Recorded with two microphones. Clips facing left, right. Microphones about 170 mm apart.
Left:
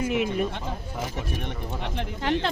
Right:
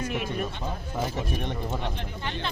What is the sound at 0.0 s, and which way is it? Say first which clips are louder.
Speech: left 6 dB; 15° left (ahead or behind).